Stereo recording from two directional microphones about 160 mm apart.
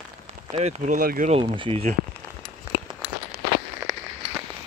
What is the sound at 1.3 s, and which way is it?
Speech, 30° right (ahead or behind).